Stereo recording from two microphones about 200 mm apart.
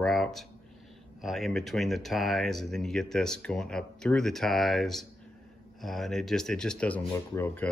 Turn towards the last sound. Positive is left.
turn(degrees=10)  # may be behind; listen again after turning